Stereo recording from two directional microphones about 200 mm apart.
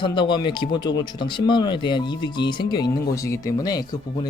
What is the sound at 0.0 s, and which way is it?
Speech, 25° left (ahead or behind).